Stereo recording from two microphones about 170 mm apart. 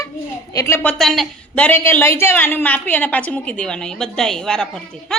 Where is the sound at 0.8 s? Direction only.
Centre (ahead or behind).